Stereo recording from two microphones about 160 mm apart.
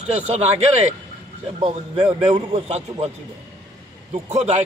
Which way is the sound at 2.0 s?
30° right (ahead or behind).